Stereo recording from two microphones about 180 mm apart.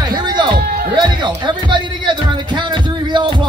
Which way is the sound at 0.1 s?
25° right (ahead or behind).